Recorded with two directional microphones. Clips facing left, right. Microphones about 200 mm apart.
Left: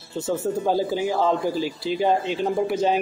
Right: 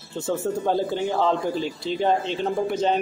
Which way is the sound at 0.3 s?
5° left (ahead or behind).